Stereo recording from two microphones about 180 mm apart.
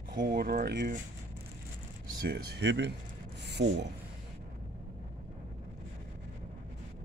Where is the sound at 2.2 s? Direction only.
65° right (ahead or behind); by 3.7 s 80° right.